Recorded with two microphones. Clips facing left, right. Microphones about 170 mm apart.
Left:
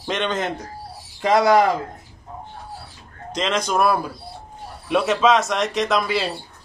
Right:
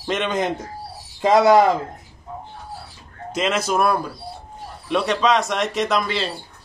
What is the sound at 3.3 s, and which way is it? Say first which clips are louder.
Speech: right 1 dB; 5° right (ahead or behind).